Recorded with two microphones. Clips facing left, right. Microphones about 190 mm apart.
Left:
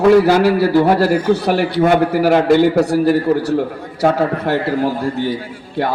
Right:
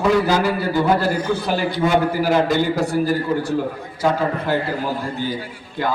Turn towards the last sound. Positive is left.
turn(degrees=65)  # may be behind; listen again after turning